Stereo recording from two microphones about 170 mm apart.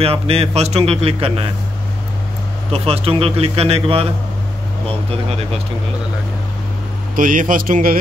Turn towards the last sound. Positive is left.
turn(degrees=-55)  # may be behind; listen again after turning